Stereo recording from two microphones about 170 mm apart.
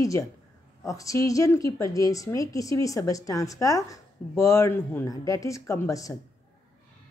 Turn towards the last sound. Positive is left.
turn(degrees=20)  # may be behind; listen again after turning